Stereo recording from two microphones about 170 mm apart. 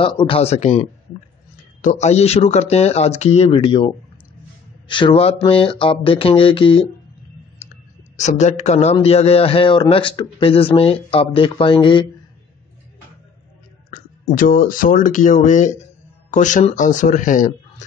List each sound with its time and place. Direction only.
0.0 s a man's voice: 30° left (ahead or behind)
8.2 s a man's voice: 45° left (ahead or behind); by 12.0 s 30° left (ahead or behind)
13.8 s speech: 55° left (ahead or behind)